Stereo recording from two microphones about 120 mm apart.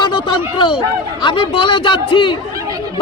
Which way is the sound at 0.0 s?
40° left (ahead or behind).